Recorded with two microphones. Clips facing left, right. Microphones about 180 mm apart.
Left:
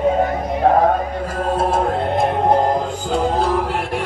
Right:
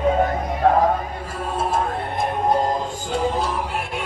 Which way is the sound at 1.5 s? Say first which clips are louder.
Left 4 dB; 70° left (ahead or behind).